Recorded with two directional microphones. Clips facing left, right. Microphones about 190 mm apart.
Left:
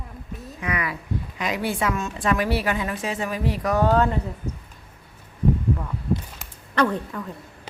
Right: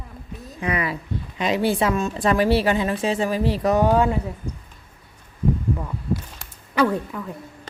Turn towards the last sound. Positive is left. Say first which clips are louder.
# right 2 dB
turn(degrees=-10)  # may be behind; listen again after turning